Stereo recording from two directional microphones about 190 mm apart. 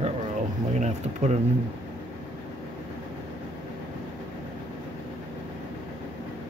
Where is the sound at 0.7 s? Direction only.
35° right (ahead or behind).